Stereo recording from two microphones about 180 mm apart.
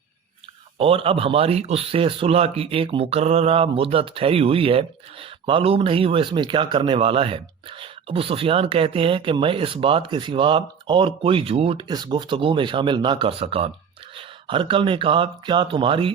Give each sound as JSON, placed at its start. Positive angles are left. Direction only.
{"t": 0.8, "sound": "speech", "side_deg": -30}